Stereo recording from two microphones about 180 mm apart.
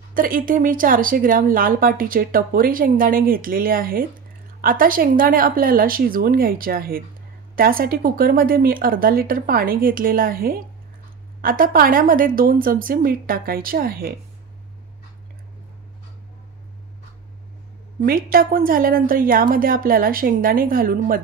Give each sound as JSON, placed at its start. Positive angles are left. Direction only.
{"t": 0.1, "sound": "a woman's voice", "side_deg": -50}
{"t": 18.0, "sound": "a woman's voice", "side_deg": -55}